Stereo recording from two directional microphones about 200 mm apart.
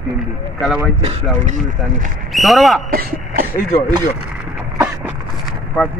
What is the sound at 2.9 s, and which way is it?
Speech, 50° right (ahead or behind).